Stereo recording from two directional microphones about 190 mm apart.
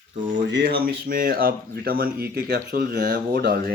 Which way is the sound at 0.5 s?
55° right (ahead or behind).